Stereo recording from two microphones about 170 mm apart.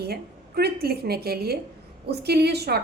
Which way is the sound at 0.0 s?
70° right (ahead or behind).